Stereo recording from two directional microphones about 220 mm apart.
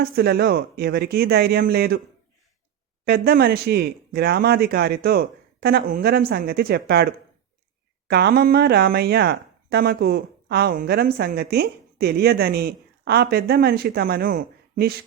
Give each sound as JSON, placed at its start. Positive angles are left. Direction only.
{"t": 0.0, "sound": "speech", "side_deg": -45}
{"t": 3.0, "sound": "speech", "side_deg": -45}